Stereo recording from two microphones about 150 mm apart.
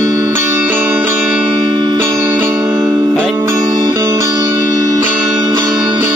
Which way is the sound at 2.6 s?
30° right (ahead or behind).